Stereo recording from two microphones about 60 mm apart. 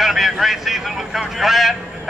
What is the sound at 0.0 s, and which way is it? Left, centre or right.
Speech, centre.